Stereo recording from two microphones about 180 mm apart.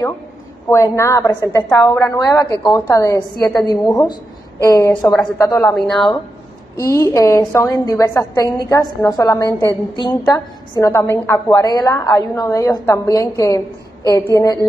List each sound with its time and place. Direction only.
0.7 s a woman's voice: 15° left (ahead or behind)
6.8 s a woman's voice: 15° left (ahead or behind)